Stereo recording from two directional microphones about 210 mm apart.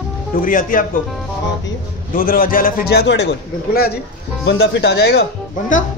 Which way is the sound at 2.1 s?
45° left (ahead or behind).